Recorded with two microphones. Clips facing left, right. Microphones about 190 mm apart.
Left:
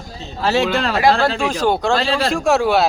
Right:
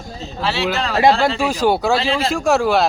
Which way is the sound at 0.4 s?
45° left (ahead or behind).